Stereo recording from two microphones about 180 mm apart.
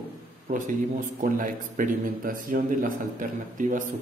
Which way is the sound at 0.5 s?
45° right (ahead or behind).